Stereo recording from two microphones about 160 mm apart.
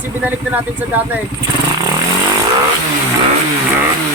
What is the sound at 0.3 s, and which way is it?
Speech, 10° right (ahead or behind).